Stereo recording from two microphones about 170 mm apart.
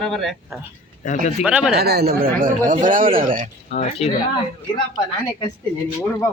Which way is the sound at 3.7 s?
45° left (ahead or behind).